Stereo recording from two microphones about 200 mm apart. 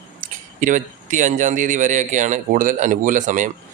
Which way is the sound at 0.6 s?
40° right (ahead or behind).